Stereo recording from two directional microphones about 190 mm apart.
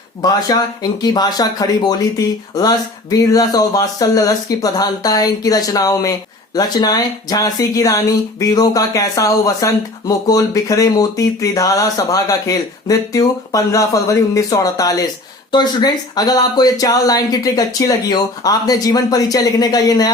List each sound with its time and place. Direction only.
0.2 s speech: 20° left (ahead or behind)